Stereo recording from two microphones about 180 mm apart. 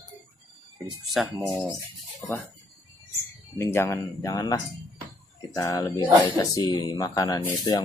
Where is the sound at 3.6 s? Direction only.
15° left (ahead or behind).